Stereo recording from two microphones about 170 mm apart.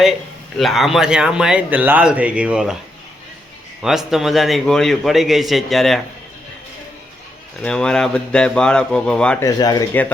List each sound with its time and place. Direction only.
0.0 s speech: centre (ahead or behind)
3.8 s speech: centre (ahead or behind)
7.6 s speech: 5° left (ahead or behind)
9.4 s speech: 25° left (ahead or behind)